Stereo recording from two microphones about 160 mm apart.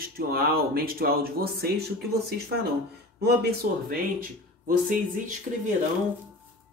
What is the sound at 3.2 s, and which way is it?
Speech, 85° right.